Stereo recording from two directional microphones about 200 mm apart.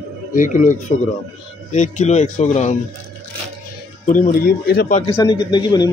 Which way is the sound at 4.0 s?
40° left (ahead or behind).